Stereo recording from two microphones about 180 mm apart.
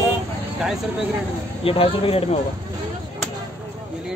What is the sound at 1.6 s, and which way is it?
Speech, 30° left (ahead or behind).